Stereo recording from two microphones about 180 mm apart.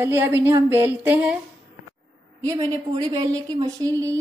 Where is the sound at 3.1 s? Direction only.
25° right (ahead or behind).